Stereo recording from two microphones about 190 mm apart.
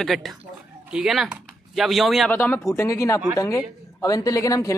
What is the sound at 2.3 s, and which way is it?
Speech, 10° left (ahead or behind).